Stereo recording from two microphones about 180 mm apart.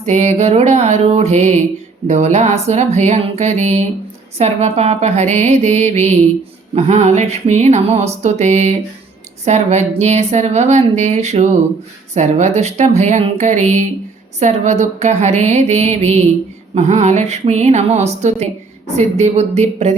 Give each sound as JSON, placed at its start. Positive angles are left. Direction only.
{"t": 0.0, "sound": "a woman's voice", "side_deg": -40}